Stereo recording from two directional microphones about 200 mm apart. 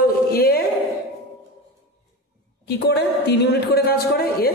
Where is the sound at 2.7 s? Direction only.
55° left (ahead or behind).